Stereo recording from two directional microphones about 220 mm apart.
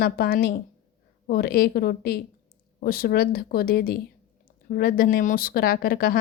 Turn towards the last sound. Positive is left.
turn(degrees=40)  # may be behind; listen again after turning